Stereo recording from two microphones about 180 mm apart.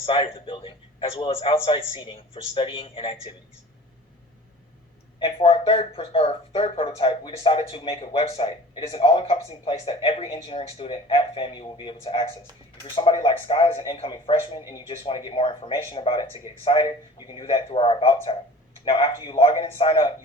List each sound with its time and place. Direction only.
0.0 s a man's voice: 30° left (ahead or behind)
5.2 s a man's voice: 30° left (ahead or behind)